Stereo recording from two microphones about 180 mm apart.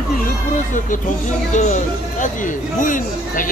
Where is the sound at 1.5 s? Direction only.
45° left (ahead or behind).